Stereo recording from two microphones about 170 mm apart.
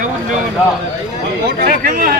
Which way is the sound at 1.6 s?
60° right (ahead or behind).